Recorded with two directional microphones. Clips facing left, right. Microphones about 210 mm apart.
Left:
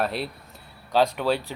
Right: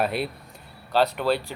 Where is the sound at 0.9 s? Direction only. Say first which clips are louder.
Even; 10° left (ahead or behind).